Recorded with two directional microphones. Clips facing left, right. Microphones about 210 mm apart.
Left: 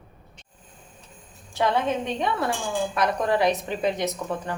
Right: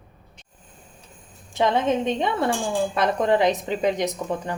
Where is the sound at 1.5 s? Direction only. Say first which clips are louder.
Right 3 dB; 20° right (ahead or behind).